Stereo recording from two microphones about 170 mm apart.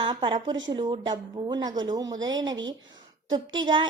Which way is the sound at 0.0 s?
30° right (ahead or behind).